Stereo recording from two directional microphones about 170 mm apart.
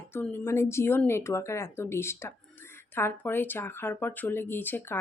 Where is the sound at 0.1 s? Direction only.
10° left (ahead or behind).